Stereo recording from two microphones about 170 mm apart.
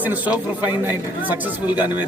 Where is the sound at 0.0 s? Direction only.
10° right (ahead or behind).